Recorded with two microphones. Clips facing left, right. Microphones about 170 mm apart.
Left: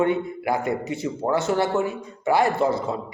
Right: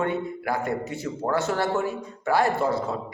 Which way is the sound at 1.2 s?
15° left (ahead or behind).